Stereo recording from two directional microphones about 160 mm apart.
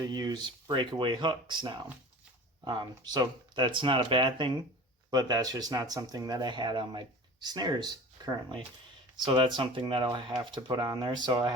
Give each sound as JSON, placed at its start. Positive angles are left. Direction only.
{"t": 0.0, "sound": "speech", "side_deg": -25}